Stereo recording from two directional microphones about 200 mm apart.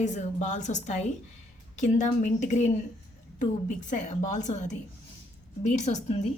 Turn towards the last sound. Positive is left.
turn(degrees=35)  # may be behind; listen again after turning